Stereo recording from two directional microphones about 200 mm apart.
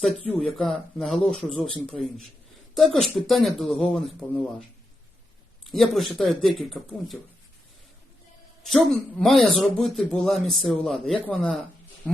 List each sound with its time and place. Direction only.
0.3 s speech: centre (ahead or behind)
5.6 s speech: centre (ahead or behind)
8.6 s speech: centre (ahead or behind)